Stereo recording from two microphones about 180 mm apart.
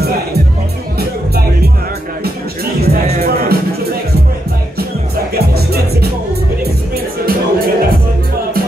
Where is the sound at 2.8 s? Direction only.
60° right (ahead or behind).